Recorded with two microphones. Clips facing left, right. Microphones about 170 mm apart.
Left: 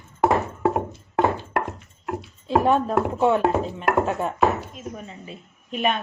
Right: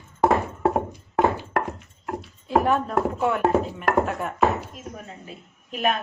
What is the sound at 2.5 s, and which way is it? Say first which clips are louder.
Speech: left 2 dB; 30° left (ahead or behind).